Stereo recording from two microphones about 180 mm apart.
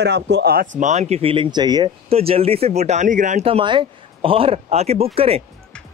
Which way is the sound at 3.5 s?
30° right (ahead or behind).